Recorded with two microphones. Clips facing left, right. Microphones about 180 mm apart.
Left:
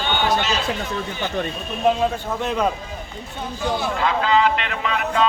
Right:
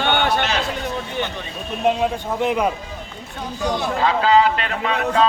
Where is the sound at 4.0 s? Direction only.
40° right (ahead or behind).